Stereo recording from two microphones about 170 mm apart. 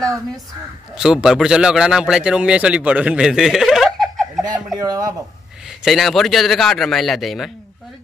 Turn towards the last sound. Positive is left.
turn(degrees=0)  # may be behind; listen again after turning